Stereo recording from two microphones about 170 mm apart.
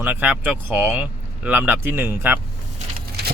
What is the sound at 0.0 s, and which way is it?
Speech, 10° right (ahead or behind).